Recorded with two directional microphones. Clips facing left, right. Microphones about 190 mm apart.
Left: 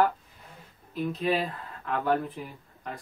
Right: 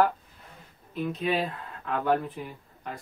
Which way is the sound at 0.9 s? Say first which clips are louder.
Left 1 dB; centre (ahead or behind).